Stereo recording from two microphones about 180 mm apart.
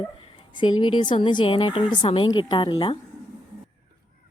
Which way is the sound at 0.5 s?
25° left (ahead or behind).